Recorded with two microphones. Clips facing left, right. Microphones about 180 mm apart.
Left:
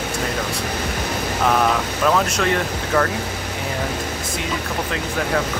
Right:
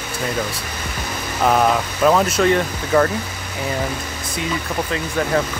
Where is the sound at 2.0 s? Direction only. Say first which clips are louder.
Right 4 dB; 5° right (ahead or behind).